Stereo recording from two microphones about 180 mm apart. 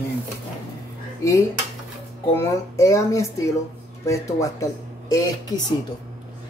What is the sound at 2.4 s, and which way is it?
Speech, 15° left (ahead or behind).